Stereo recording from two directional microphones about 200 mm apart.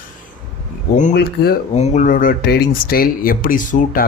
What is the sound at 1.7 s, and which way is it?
Speech, 35° left (ahead or behind).